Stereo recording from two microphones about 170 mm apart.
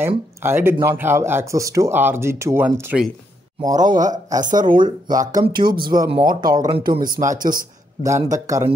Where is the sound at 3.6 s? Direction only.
25° right (ahead or behind).